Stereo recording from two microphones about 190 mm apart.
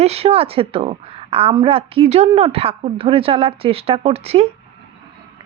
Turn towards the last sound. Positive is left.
turn(degrees=-30)  # may be behind; listen again after turning